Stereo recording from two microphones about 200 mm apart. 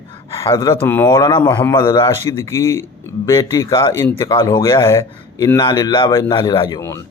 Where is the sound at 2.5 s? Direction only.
15° left (ahead or behind).